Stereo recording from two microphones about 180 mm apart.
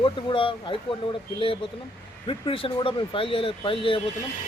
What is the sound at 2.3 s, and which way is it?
Speech, 30° left (ahead or behind).